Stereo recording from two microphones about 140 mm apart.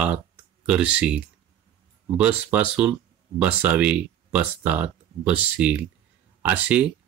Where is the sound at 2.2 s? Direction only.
10° right (ahead or behind).